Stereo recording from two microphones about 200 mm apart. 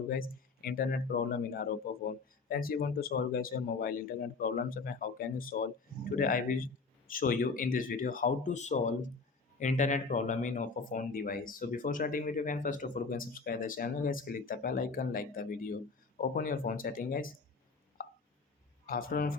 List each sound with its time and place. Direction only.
0.1 s speech: 45° left (ahead or behind)
18.0 s a sound: 45° left (ahead or behind)
18.9 s speech: 45° left (ahead or behind)